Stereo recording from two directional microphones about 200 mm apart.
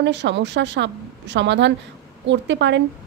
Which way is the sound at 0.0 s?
60° right (ahead or behind).